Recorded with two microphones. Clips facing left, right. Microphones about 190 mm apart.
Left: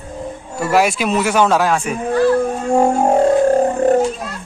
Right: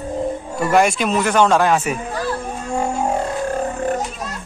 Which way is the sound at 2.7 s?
55° left (ahead or behind).